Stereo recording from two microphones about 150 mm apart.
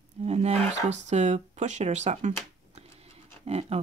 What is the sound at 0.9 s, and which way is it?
Speech, 50° right (ahead or behind).